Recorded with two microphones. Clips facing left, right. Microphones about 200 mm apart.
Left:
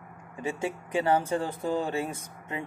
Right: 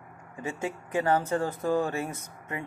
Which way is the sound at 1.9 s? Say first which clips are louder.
Left 2 dB; 25° left (ahead or behind).